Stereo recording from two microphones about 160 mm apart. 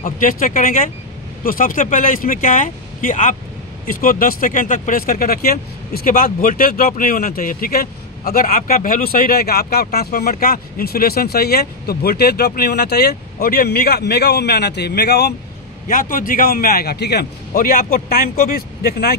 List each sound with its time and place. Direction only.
0.0 s speech: 60° left (ahead or behind); by 15.3 s 90° left
15.9 s a man's voice: 60° left (ahead or behind)